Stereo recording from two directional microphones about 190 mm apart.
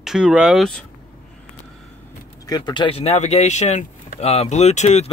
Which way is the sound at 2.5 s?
25° left (ahead or behind).